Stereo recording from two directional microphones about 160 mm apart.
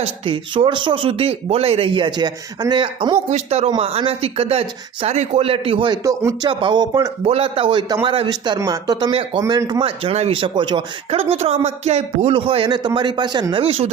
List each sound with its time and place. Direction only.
0.0 s speech: 35° right (ahead or behind)
3.2 s speech: 40° right (ahead or behind)
6.0 s speech: 20° right (ahead or behind)
6.5 s speech: 30° right (ahead or behind)
7.3 s speech: 35° right (ahead or behind)
10.0 s speech: 40° right (ahead or behind)